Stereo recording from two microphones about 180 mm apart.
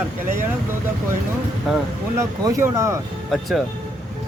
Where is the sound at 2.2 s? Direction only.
15° right (ahead or behind).